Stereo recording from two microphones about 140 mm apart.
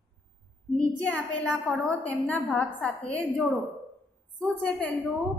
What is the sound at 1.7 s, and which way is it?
A woman's voice, 10° left (ahead or behind).